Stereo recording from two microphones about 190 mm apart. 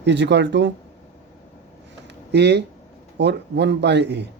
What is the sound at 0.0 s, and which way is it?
Speech, 65° right (ahead or behind).